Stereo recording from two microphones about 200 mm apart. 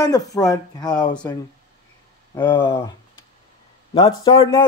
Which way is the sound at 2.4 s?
25° left (ahead or behind).